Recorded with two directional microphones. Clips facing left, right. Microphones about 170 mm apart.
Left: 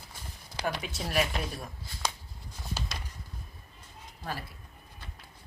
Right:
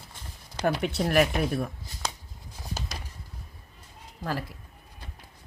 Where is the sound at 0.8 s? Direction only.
65° right (ahead or behind).